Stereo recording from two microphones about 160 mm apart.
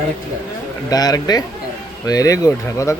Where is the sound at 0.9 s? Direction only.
25° left (ahead or behind).